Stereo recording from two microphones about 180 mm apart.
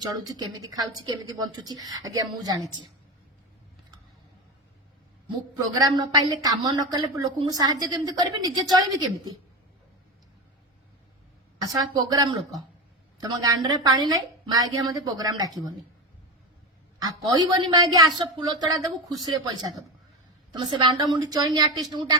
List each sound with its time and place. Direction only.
0.3 s a woman's voice: 20° right (ahead or behind)
5.5 s a woman's voice: 25° right (ahead or behind)
11.6 s a woman's voice: 20° right (ahead or behind)
17.0 s a woman's voice: 20° right (ahead or behind)